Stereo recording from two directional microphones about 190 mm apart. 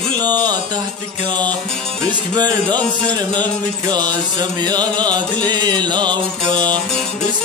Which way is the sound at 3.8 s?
20° right (ahead or behind).